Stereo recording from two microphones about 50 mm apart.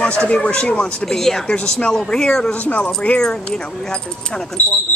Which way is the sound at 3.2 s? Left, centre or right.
Centre.